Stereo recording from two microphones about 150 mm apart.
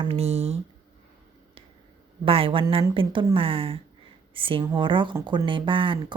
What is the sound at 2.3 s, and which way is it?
A woman's voice, 35° right (ahead or behind).